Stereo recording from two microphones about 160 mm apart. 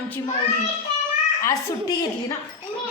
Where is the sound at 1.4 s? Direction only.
20° left (ahead or behind).